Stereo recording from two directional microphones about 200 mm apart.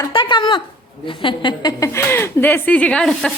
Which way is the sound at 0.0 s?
25° left (ahead or behind).